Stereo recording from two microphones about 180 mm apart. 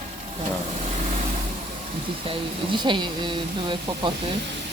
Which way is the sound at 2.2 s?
30° right (ahead or behind).